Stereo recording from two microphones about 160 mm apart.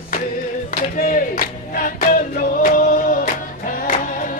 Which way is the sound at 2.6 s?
55° left (ahead or behind).